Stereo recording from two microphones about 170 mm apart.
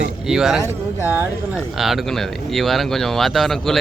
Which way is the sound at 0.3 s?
Centre (ahead or behind).